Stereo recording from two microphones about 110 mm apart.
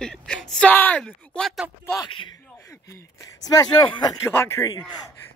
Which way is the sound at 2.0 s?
50° left (ahead or behind).